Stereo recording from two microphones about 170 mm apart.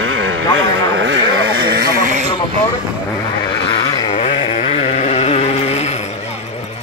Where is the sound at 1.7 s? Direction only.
60° right (ahead or behind).